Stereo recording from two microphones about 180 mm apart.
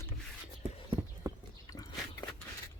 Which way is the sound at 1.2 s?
20° right (ahead or behind).